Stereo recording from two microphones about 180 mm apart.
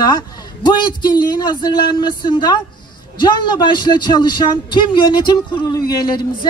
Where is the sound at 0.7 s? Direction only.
25° left (ahead or behind).